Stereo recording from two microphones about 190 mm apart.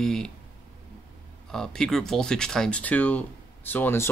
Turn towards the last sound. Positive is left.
turn(degrees=10)  # may be behind; listen again after turning